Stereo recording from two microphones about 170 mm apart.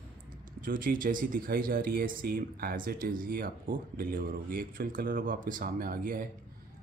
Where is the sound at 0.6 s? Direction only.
55° right (ahead or behind).